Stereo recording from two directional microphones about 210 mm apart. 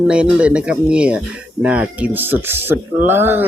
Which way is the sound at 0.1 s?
5° right (ahead or behind).